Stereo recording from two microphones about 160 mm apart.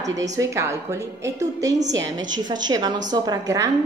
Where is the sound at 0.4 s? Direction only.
20° right (ahead or behind).